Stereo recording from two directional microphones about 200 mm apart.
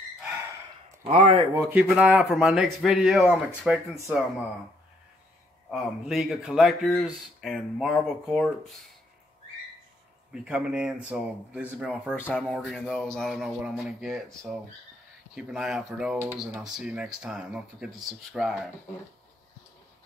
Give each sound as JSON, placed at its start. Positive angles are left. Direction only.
{"t": 1.0, "sound": "speech", "side_deg": -30}
{"t": 1.5, "sound": "speech", "side_deg": -10}
{"t": 5.7, "sound": "speech", "side_deg": 0}
{"t": 10.3, "sound": "speech", "side_deg": -5}